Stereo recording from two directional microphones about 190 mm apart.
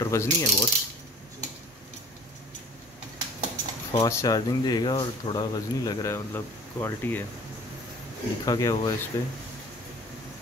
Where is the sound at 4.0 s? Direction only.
15° left (ahead or behind).